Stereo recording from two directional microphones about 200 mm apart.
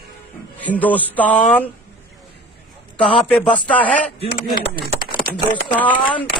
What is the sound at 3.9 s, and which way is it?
Speech, 40° left (ahead or behind).